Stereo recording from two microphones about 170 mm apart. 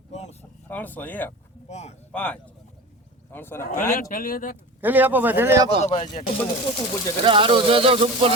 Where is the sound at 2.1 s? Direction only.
5° left (ahead or behind).